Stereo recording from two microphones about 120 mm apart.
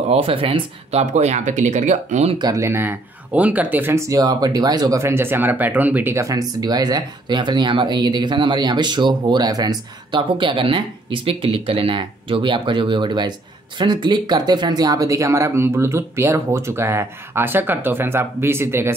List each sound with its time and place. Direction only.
0.1 s speech: 50° right (ahead or behind)
1.0 s speech: 75° right (ahead or behind)
2.3 s speech: 30° right (ahead or behind); by 6.1 s 15° right (ahead or behind)
6.1 s speech: 30° right (ahead or behind)